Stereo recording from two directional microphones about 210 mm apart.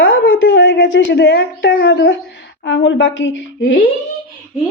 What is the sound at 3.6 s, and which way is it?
Speech, 40° left (ahead or behind).